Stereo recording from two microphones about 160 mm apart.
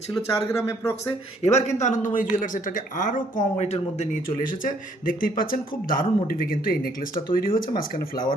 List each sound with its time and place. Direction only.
0.1 s speech: 20° left (ahead or behind)
1.4 s speech: 40° left (ahead or behind); by 8.3 s 65° left (ahead or behind)